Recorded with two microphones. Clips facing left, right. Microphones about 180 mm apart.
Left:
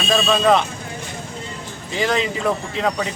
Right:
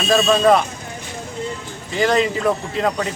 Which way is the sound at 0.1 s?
Centre (ahead or behind).